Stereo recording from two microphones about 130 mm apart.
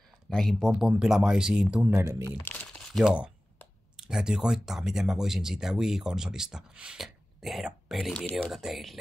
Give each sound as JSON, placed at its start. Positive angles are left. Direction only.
{"t": 0.3, "sound": "speech", "side_deg": 5}
{"t": 2.0, "sound": "speech", "side_deg": -20}
{"t": 2.5, "sound": "a sound", "side_deg": 15}
{"t": 2.8, "sound": "speech", "side_deg": 0}